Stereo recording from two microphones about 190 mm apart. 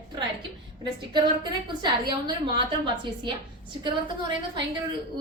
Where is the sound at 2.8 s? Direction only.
25° right (ahead or behind).